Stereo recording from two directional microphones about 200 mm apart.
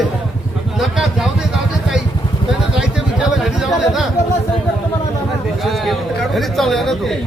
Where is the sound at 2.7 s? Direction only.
5° right (ahead or behind).